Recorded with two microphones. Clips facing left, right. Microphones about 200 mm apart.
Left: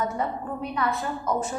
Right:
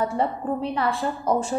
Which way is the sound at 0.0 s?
30° right (ahead or behind).